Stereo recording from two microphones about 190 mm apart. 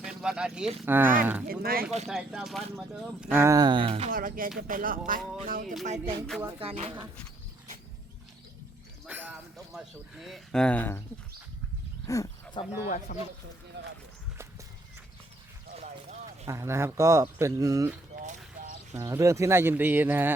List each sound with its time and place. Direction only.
0.0 s speech: 5° right (ahead or behind)
1.5 s speech: 50° right (ahead or behind)
2.0 s speech: centre (ahead or behind); by 4.1 s 30° right (ahead or behind)
4.1 s speech: 50° right (ahead or behind)
5.8 s music: 35° right (ahead or behind)
9.0 s a sound: 10° right (ahead or behind)
9.7 s speech: centre (ahead or behind)
12.0 s roaring cats: 15° left (ahead or behind)
13.1 s speech: 45° left (ahead or behind)
13.8 s a sound: 65° right (ahead or behind)
15.7 s a sound: 35° right (ahead or behind)
16.5 s speech: 15° right (ahead or behind)
18.2 s a sound: 40° right (ahead or behind)
18.9 s speech: 15° right (ahead or behind)